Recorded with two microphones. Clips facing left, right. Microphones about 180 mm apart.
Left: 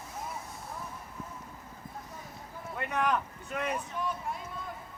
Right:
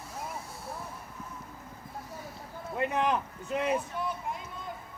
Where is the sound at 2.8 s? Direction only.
25° right (ahead or behind).